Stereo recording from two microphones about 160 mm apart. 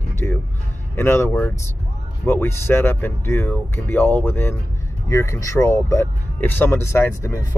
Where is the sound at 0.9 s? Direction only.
15° left (ahead or behind).